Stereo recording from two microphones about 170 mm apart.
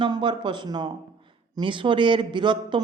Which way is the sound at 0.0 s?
30° right (ahead or behind).